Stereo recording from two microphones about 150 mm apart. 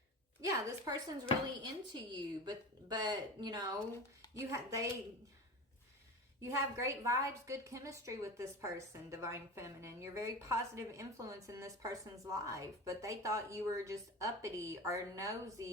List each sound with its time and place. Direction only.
0.4 s a woman's voice: 25° right (ahead or behind)
6.4 s a woman's voice: 20° right (ahead or behind)